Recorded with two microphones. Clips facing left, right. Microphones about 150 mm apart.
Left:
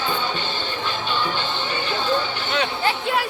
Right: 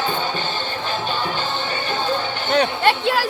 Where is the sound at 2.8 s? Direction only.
80° right.